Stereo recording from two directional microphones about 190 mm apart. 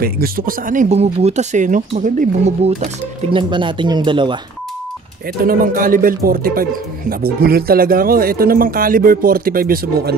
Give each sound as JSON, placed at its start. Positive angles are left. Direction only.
{"t": 0.0, "sound": "speech", "side_deg": -50}
{"t": 5.4, "sound": "speech", "side_deg": -50}